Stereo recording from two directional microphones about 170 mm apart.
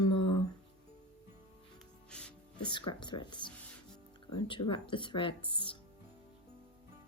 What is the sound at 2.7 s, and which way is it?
Speech, 25° left (ahead or behind).